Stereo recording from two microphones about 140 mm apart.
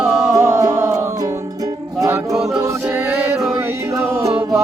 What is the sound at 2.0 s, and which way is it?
A capella, 25° right (ahead or behind).